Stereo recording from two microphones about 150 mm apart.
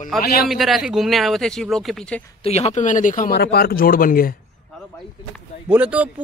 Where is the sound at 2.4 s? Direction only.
45° left (ahead or behind); by 4.3 s 75° left (ahead or behind).